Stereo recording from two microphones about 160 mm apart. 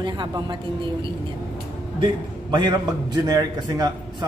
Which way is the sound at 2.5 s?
25° right (ahead or behind).